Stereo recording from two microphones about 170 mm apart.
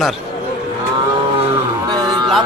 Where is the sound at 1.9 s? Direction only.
25° right (ahead or behind).